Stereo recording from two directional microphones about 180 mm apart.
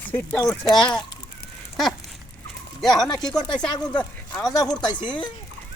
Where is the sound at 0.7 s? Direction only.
5° left (ahead or behind).